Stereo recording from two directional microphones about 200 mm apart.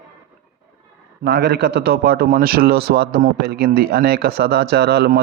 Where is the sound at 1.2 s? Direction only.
55° right (ahead or behind).